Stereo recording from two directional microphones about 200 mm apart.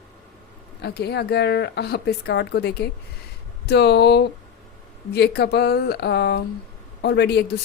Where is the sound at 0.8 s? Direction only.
55° left (ahead or behind).